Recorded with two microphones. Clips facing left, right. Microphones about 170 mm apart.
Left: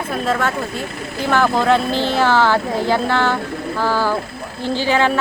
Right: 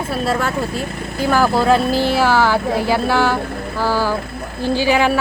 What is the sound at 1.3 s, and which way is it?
A woman's voice, 5° right (ahead or behind).